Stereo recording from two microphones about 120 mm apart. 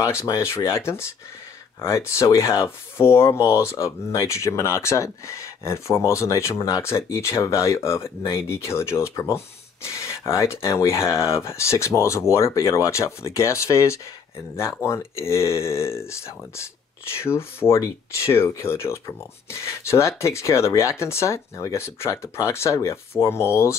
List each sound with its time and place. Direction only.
0.0 s speech: 25° left (ahead or behind)